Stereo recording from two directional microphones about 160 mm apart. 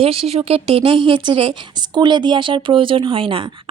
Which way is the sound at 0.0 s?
35° right (ahead or behind).